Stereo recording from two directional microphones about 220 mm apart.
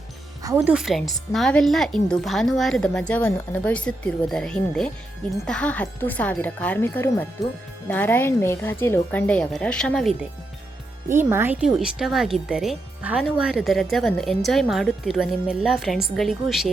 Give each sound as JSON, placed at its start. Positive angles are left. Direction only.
{"t": 0.4, "sound": "speech", "side_deg": -10}
{"t": 11.2, "sound": "speech", "side_deg": -10}